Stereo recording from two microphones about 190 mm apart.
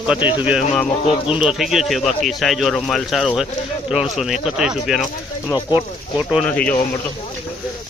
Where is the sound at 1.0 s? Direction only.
30° left (ahead or behind).